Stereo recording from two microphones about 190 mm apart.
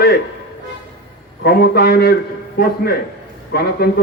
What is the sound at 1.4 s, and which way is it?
Speech, 55° left (ahead or behind).